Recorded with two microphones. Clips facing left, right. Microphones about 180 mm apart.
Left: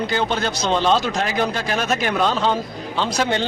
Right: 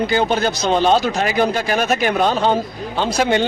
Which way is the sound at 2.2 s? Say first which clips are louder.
Right 2 dB; 50° right (ahead or behind).